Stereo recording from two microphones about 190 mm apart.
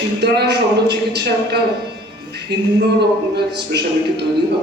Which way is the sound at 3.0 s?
60° right (ahead or behind).